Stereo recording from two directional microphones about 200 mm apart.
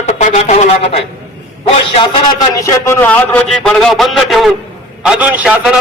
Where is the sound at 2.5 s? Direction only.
15° left (ahead or behind).